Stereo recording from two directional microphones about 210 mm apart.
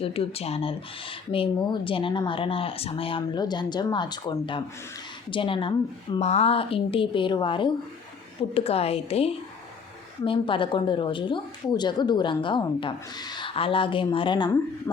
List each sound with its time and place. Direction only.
0.0 s a woman's voice: 25° left (ahead or behind)